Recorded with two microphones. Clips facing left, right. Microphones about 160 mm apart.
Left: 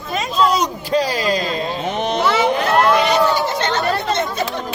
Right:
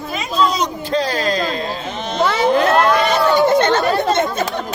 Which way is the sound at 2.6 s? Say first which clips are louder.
Right 1 dB; 50° right (ahead or behind).